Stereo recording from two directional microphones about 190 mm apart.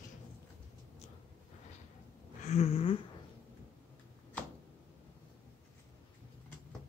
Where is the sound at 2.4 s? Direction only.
35° left (ahead or behind).